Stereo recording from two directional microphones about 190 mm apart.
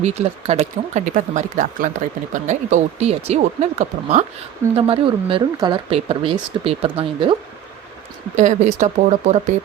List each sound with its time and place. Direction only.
0.0 s speech: 35° right (ahead or behind)
8.4 s speech: 40° right (ahead or behind)